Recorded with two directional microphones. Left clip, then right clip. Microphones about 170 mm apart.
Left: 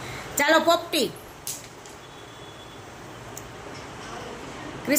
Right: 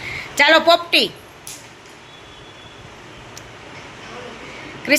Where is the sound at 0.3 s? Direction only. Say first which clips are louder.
Right 7 dB; 10° left (ahead or behind).